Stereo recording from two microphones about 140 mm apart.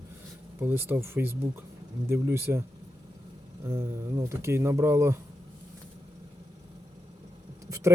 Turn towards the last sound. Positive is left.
turn(degrees=-25)  # may be behind; listen again after turning